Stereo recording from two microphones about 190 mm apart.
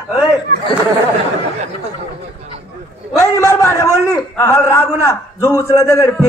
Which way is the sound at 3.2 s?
15° left (ahead or behind).